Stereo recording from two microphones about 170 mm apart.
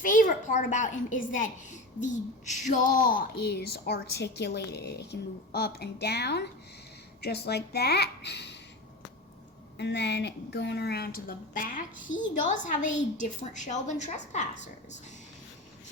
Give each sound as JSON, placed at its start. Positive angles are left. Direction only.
{"t": 0.0, "sound": "a woman's voice", "side_deg": 50}
{"t": 2.7, "sound": "a woman's voice", "side_deg": 50}
{"t": 9.7, "sound": "a woman's voice", "side_deg": 90}